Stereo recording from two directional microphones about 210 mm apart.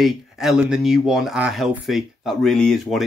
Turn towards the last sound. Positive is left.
turn(degrees=0)  # may be behind; listen again after turning